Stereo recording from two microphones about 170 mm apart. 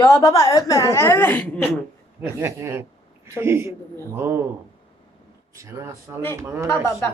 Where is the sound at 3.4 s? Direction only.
15° right (ahead or behind).